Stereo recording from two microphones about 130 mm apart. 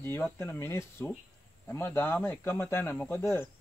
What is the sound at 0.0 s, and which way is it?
Speech, 20° left (ahead or behind).